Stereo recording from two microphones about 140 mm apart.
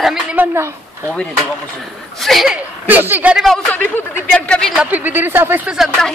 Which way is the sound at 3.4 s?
5° left (ahead or behind).